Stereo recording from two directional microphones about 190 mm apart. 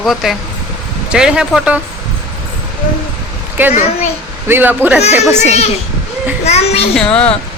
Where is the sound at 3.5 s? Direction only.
10° right (ahead or behind).